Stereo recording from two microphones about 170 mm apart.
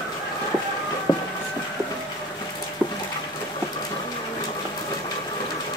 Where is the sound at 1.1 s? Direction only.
25° left (ahead or behind).